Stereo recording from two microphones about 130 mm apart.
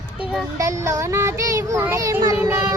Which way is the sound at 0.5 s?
25° right (ahead or behind).